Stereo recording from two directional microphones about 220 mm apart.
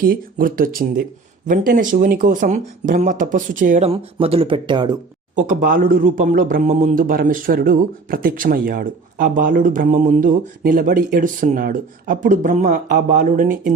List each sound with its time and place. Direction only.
0.0 s a man's voice: 40° right (ahead or behind); by 4.9 s 20° right (ahead or behind)
5.4 s a man's voice: 40° right (ahead or behind)